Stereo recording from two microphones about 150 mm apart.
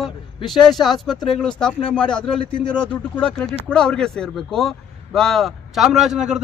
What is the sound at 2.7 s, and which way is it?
Speech, 10° left (ahead or behind).